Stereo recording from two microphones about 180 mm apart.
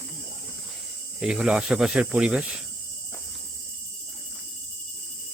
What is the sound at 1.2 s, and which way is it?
Speech, centre (ahead or behind).